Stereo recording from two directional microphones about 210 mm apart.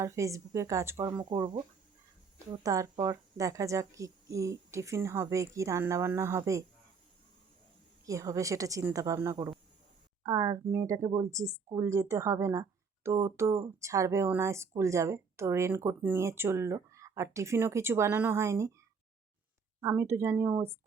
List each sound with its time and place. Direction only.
0.0 s speech: 15° right (ahead or behind)
8.0 s speech: 15° right (ahead or behind)
19.8 s speech: 10° right (ahead or behind)